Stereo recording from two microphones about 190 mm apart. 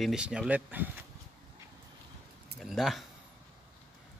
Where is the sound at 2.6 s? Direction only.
Centre (ahead or behind).